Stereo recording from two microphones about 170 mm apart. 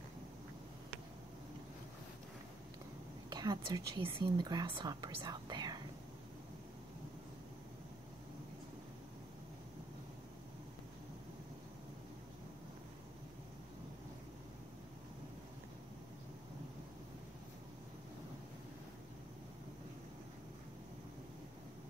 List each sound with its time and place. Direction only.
3.3 s speech: 25° right (ahead or behind)